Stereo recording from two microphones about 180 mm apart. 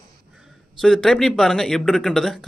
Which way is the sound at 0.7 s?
5° left (ahead or behind).